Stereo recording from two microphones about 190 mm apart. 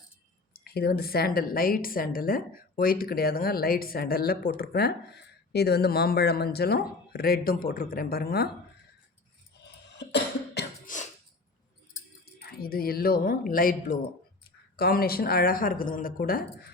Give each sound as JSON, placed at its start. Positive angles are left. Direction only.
{"t": 0.6, "sound": "a woman's voice", "side_deg": 55}
{"t": 10.0, "sound": "cough", "side_deg": 65}
{"t": 10.8, "sound": "throat clearing", "side_deg": 40}
{"t": 12.2, "sound": "a woman's voice", "side_deg": 55}